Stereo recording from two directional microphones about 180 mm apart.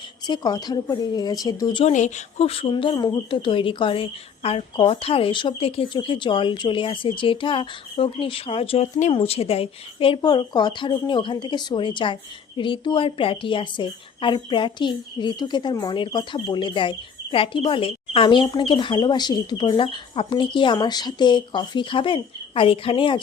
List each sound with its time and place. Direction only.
0.3 s a woman's voice: 20° left (ahead or behind)
1.8 s a woman's voice: 40° left (ahead or behind)